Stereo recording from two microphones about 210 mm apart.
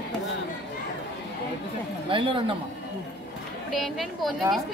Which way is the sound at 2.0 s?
25° right (ahead or behind).